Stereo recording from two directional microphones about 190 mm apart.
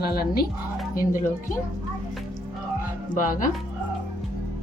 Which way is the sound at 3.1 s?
45° left (ahead or behind).